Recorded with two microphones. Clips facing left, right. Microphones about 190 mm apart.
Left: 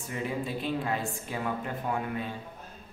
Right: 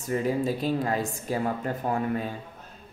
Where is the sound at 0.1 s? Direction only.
40° right (ahead or behind).